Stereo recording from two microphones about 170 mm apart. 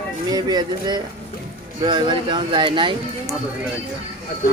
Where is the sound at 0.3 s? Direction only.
25° right (ahead or behind).